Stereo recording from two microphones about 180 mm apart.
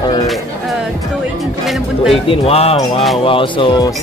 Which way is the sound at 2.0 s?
30° left (ahead or behind).